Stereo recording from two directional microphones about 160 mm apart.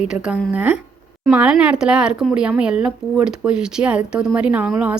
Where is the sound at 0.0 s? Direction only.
5° right (ahead or behind).